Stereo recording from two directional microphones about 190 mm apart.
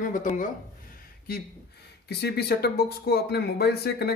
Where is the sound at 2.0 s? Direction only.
60° left (ahead or behind).